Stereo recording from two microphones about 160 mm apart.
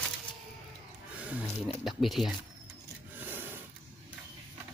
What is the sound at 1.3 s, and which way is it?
Speech, centre (ahead or behind).